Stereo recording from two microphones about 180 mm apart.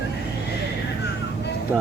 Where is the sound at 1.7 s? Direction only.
5° right (ahead or behind).